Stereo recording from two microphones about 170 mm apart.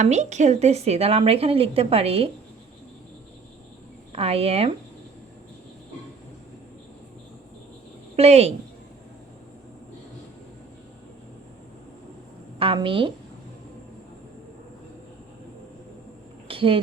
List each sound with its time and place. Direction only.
0.0 s a woman's voice: 40° right (ahead or behind)
4.1 s a woman's voice: 35° right (ahead or behind)
8.1 s a woman's voice: 35° right (ahead or behind)
12.5 s a woman's voice: 30° right (ahead or behind)
16.5 s a sound: 30° right (ahead or behind)